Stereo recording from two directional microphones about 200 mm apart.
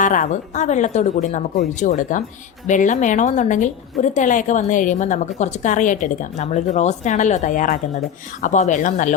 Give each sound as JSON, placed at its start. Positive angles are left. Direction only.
{"t": 0.0, "sound": "a woman's voice", "side_deg": 40}